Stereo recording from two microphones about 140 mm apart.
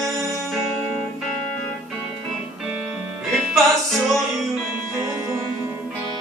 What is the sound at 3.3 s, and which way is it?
Music, 5° left (ahead or behind).